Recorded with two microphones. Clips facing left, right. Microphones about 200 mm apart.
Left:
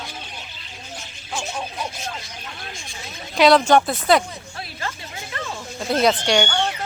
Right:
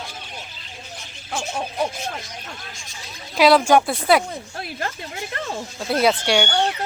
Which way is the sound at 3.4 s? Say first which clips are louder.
Even; 5° right (ahead or behind).